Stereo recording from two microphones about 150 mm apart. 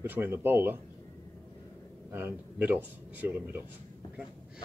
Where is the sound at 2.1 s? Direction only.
15° right (ahead or behind).